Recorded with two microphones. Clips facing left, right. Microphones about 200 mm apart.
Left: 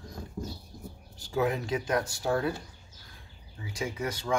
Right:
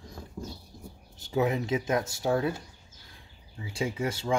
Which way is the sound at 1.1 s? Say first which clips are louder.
Right 2 dB; 20° right (ahead or behind).